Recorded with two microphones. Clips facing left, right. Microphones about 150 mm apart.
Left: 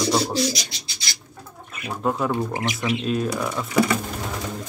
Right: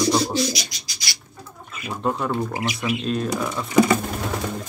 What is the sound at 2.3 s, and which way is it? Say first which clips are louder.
Speech: even; 20° left (ahead or behind).